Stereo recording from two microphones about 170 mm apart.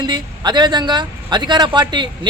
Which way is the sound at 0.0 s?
25° right (ahead or behind).